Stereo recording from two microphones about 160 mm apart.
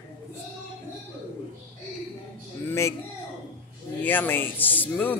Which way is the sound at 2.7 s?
15° left (ahead or behind).